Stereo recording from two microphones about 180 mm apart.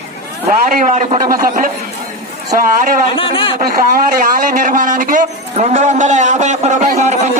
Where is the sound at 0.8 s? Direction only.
40° right (ahead or behind).